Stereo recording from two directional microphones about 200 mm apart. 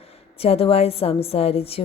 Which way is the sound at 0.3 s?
30° left (ahead or behind).